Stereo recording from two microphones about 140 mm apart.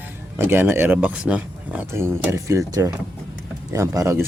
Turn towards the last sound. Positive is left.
turn(degrees=-20)  # may be behind; listen again after turning